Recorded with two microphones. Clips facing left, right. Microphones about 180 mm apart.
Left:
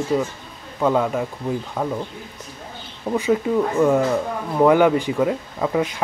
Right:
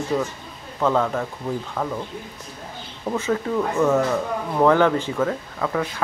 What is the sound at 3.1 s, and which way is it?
Speech, 15° left (ahead or behind).